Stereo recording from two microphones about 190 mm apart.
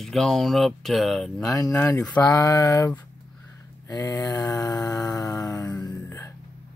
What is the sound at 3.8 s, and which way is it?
Mantra, 20° left (ahead or behind).